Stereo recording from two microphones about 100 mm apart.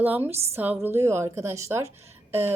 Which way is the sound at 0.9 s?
30° right (ahead or behind).